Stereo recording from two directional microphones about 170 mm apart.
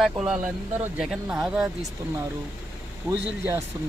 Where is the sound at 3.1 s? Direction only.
15° right (ahead or behind).